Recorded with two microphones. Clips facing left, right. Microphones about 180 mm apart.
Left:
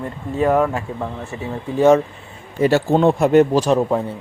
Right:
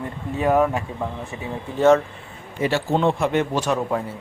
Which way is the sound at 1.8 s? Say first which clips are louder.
Left 3 dB; 15° left (ahead or behind).